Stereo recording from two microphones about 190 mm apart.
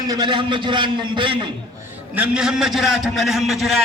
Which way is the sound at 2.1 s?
5° right (ahead or behind).